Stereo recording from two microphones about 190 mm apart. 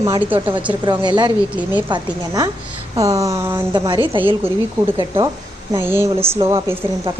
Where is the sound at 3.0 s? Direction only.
15° right (ahead or behind).